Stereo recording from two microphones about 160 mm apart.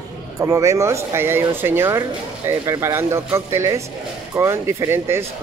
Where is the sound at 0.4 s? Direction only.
20° right (ahead or behind).